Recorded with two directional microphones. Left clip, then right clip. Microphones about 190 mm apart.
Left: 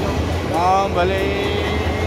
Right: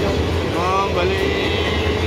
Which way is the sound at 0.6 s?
55° left (ahead or behind).